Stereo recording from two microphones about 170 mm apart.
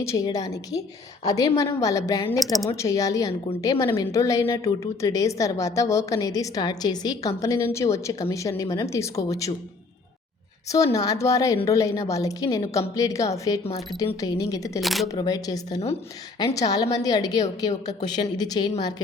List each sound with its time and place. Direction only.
0.0 s a woman's voice: 20° left (ahead or behind)
10.9 s a woman's voice: 20° left (ahead or behind)
14.8 s speech: centre (ahead or behind)
15.0 s a woman's voice: 20° left (ahead or behind)